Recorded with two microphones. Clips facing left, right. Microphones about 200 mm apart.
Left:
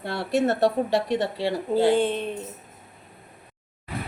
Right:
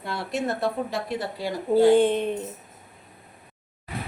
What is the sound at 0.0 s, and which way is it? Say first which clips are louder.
Speech: left 5 dB; 65° left (ahead or behind).